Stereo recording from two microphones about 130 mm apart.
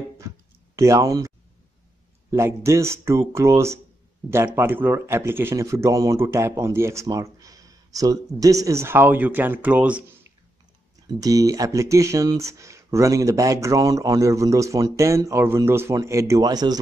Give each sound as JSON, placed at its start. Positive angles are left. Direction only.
{"t": 0.7, "sound": "speech", "side_deg": -25}
{"t": 2.3, "sound": "speech", "side_deg": -20}
{"t": 11.1, "sound": "speech", "side_deg": -30}